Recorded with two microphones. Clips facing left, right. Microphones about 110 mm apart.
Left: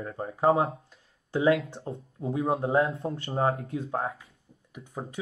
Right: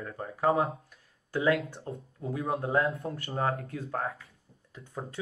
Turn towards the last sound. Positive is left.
turn(degrees=15)  # may be behind; listen again after turning